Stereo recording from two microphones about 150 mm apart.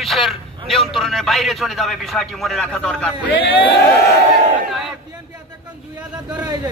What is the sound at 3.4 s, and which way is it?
Speech, 35° left (ahead or behind).